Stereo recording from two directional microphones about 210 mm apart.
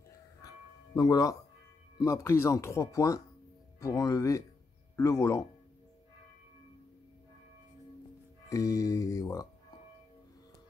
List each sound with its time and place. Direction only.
0.4 s bell: 15° left (ahead or behind)
2.0 s speech: 15° left (ahead or behind)
8.5 s speech: 15° left (ahead or behind)